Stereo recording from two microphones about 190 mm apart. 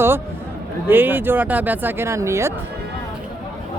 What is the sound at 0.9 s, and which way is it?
Speech, 10° right (ahead or behind).